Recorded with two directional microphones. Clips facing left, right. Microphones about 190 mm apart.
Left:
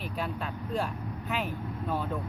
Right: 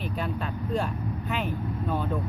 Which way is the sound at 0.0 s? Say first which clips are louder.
Right 3 dB; centre (ahead or behind).